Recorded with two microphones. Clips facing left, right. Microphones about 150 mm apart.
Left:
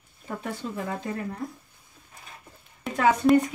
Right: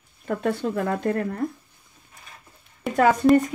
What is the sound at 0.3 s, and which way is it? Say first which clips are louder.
Speech: right 8 dB; 65° right (ahead or behind).